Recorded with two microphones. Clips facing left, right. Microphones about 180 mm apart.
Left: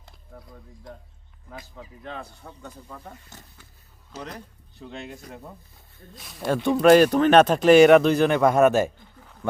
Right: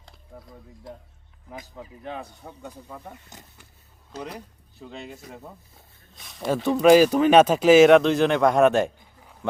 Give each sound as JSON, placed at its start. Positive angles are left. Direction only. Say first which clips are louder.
{"t": 0.3, "sound": "speech", "louder": "right 1 dB", "side_deg": -10}